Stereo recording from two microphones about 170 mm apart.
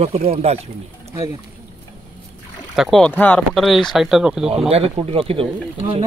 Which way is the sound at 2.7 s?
Centre (ahead or behind).